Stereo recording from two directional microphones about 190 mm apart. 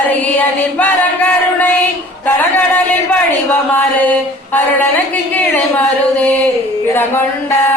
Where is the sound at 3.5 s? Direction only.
10° left (ahead or behind).